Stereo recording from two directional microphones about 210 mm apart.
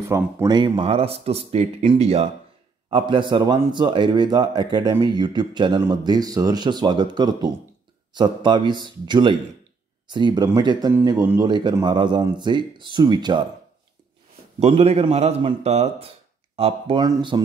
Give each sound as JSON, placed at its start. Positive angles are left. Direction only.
{"t": 0.1, "sound": "speech", "side_deg": -15}
{"t": 14.6, "sound": "speech", "side_deg": -30}